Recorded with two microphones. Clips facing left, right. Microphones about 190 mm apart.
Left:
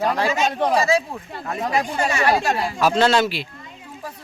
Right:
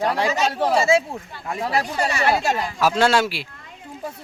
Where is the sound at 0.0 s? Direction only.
15° right (ahead or behind).